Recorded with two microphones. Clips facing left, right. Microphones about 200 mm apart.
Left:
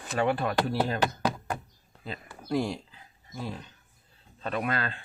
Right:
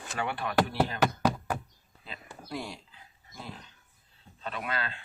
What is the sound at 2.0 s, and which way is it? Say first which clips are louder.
Speech: left 6 dB; 45° left (ahead or behind).